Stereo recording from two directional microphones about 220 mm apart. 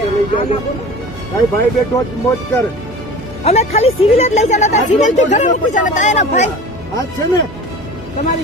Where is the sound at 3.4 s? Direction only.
30° left (ahead or behind).